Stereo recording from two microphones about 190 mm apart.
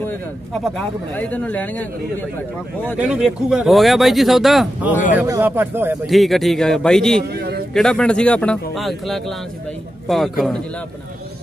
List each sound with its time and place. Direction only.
0.7 s a man's voice: 10° left (ahead or behind)
3.0 s speech: 5° right (ahead or behind)
5.1 s a man's voice: 15° right (ahead or behind)
6.0 s speech: centre (ahead or behind)
7.3 s a sound: 55° right (ahead or behind)
7.7 s speech: 5° left (ahead or behind)